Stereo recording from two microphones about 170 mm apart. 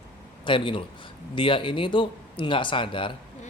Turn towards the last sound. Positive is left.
turn(degrees=30)  # may be behind; listen again after turning